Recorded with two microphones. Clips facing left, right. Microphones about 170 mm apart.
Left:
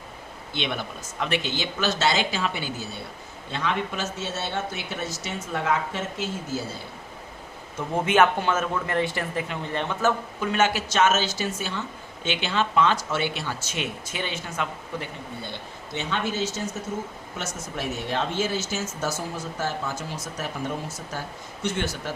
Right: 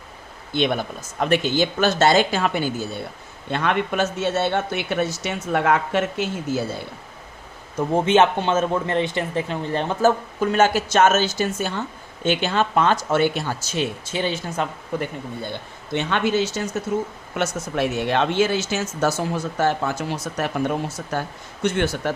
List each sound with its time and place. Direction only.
0.5 s speech: 45° right (ahead or behind)
3.5 s speech: 60° right (ahead or behind)
7.8 s speech: 30° right (ahead or behind)
14.9 s speech: 50° right (ahead or behind)
15.9 s speech: 65° right (ahead or behind)